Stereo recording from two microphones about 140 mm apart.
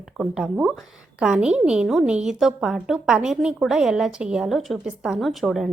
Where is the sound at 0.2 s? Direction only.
5° right (ahead or behind).